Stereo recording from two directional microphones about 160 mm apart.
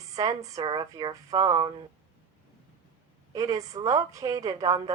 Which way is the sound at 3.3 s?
20° right (ahead or behind).